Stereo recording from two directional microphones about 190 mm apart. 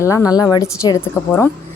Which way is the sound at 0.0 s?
15° left (ahead or behind).